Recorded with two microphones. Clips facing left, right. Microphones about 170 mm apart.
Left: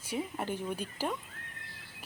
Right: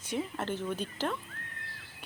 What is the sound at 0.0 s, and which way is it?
Speech, 10° left (ahead or behind).